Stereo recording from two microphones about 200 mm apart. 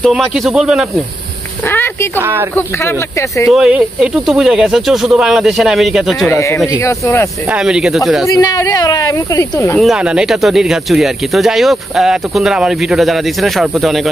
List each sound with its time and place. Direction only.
0.0 s speech: centre (ahead or behind)
1.7 s a sound: 10° left (ahead or behind)
2.1 s speech: 10° right (ahead or behind)
2.5 s speech: 15° left (ahead or behind)
3.4 s speech: 5° right (ahead or behind)
6.2 s speech: 15° left (ahead or behind)
7.5 s speech: 5° right (ahead or behind)
8.3 s speech: 15° left (ahead or behind)
9.8 s speech: 5° right (ahead or behind)